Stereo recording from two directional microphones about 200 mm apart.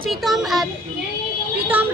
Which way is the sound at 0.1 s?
Centre (ahead or behind).